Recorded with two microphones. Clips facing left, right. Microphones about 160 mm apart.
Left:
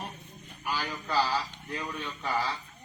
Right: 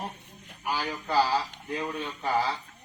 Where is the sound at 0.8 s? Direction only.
25° right (ahead or behind).